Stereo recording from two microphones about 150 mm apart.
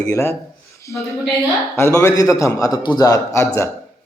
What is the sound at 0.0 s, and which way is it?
A man's voice, 20° left (ahead or behind).